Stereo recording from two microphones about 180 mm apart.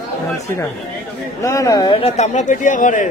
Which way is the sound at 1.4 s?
15° left (ahead or behind).